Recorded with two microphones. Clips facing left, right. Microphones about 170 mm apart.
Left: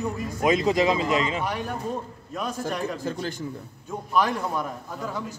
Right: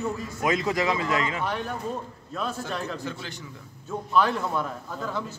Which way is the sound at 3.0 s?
45° left (ahead or behind).